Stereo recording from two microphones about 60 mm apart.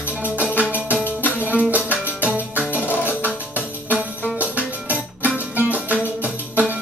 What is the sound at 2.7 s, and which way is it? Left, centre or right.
Music, left.